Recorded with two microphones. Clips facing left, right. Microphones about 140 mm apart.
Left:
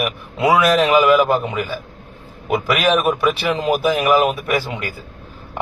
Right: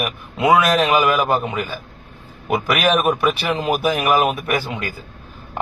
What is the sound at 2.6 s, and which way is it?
A man's voice, 20° right (ahead or behind).